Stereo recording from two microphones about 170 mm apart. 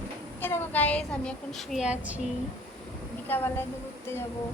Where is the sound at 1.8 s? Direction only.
10° right (ahead or behind).